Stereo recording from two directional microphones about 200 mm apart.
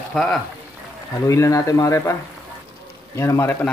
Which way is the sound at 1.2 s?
15° left (ahead or behind).